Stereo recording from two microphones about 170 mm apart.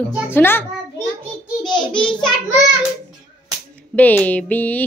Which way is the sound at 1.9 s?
30° left (ahead or behind).